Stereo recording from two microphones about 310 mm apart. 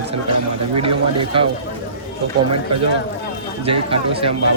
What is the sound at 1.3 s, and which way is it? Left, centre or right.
Speech, centre.